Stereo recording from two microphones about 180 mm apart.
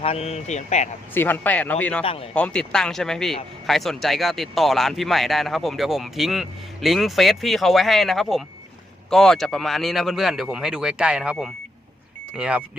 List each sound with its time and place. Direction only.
0.0 s speech: 35° left (ahead or behind)
1.1 s speech: 10° left (ahead or behind); by 12.6 s 5° right (ahead or behind)